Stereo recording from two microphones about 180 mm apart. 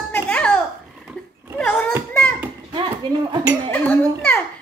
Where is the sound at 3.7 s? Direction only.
10° left (ahead or behind).